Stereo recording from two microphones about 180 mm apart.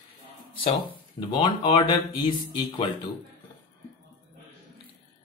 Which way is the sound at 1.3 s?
25° left (ahead or behind).